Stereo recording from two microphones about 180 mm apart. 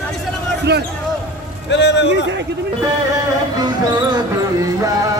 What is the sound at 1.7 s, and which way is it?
Speech, 80° left.